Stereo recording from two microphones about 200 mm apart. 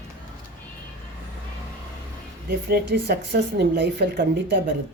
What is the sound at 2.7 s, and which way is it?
Speech, 55° right (ahead or behind).